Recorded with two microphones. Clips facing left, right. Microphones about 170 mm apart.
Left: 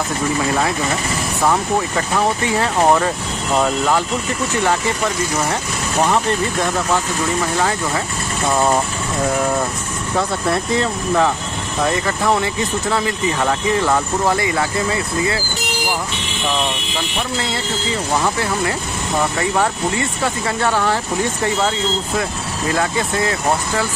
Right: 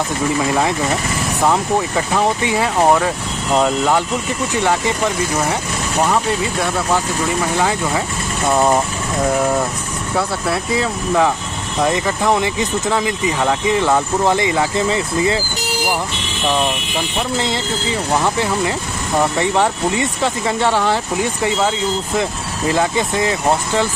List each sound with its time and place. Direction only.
1.5 s speech: 15° right (ahead or behind)
6.0 s speech: centre (ahead or behind)
10.1 s speech: 5° right (ahead or behind); by 15.4 s 20° right (ahead or behind)
18.1 s speech: 15° right (ahead or behind)
19.6 s speech: 15° right (ahead or behind)